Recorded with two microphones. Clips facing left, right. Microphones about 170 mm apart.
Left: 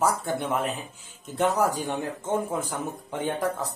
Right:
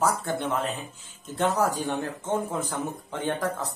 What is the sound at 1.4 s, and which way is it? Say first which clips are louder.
Speech: left 1 dB; 15° left (ahead or behind).